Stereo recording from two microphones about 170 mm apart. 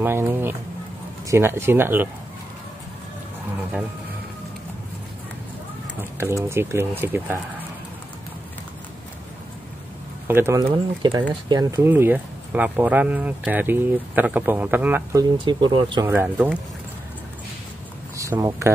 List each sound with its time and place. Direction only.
0.0 s speech: 15° right (ahead or behind)
5.9 s speech: 15° right (ahead or behind)
10.2 s speech: 15° right (ahead or behind)
11.9 s speech: 10° right (ahead or behind)
15.1 s speech: 25° right (ahead or behind)
16.1 s speech: 10° right (ahead or behind)
18.1 s speech: 20° right (ahead or behind)